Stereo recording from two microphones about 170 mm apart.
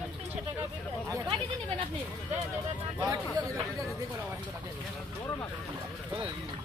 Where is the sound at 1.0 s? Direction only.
20° right (ahead or behind).